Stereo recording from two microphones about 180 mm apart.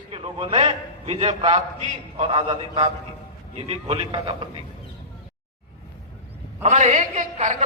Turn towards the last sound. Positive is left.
turn(degrees=-45)  # may be behind; listen again after turning